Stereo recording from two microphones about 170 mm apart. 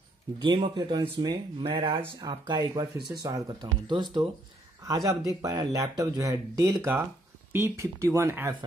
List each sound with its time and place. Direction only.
0.4 s speech: 25° right (ahead or behind)